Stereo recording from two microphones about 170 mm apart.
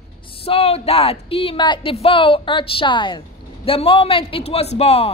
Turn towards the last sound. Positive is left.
turn(degrees=35)  # may be behind; listen again after turning